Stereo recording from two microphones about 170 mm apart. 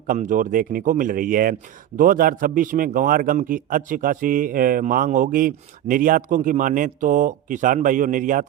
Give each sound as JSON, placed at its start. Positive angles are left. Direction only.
{"t": 0.1, "sound": "speech", "side_deg": -50}